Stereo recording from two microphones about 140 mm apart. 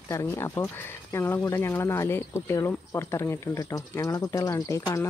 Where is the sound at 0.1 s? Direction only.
20° left (ahead or behind).